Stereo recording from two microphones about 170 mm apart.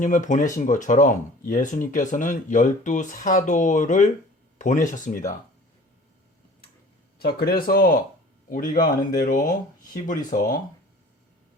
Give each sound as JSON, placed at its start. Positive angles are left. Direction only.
{"t": 0.0, "sound": "speech", "side_deg": 50}
{"t": 7.2, "sound": "speech", "side_deg": 65}